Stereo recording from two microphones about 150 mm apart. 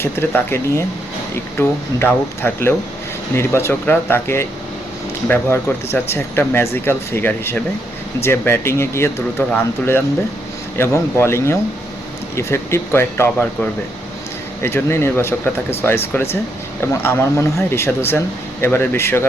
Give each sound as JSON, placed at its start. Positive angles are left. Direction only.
{"t": 0.0, "sound": "speech", "side_deg": 15}